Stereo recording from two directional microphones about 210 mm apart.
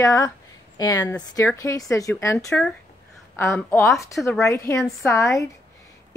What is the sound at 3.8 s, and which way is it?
Speech, centre (ahead or behind).